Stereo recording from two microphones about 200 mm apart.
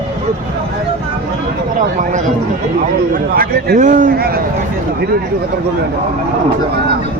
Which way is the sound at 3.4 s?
50° right (ahead or behind).